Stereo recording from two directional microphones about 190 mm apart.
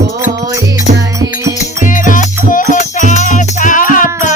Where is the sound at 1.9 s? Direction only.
45° left (ahead or behind).